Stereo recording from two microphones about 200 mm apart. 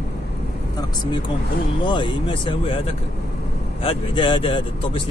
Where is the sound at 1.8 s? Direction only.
25° left (ahead or behind).